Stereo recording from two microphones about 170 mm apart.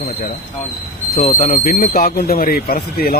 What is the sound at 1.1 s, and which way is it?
Speech, 55° left (ahead or behind).